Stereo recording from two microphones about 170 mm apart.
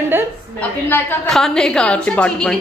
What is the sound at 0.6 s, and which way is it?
A woman's voice, 10° left (ahead or behind).